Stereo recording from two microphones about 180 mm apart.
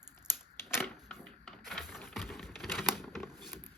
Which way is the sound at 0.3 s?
15° left (ahead or behind).